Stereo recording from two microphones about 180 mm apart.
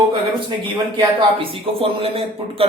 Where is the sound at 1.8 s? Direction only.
30° right (ahead or behind).